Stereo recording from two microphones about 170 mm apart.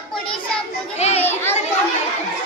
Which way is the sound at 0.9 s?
40° left (ahead or behind).